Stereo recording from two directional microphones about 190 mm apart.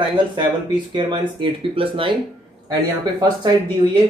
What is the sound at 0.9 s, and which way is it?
Speech, 25° right (ahead or behind).